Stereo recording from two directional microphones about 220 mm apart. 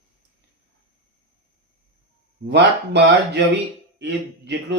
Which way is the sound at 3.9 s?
50° right (ahead or behind).